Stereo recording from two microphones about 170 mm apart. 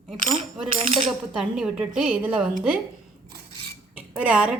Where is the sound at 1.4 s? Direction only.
Centre (ahead or behind).